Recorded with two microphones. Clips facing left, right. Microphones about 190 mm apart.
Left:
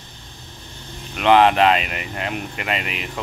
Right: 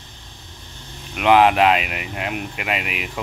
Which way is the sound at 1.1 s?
5° right (ahead or behind).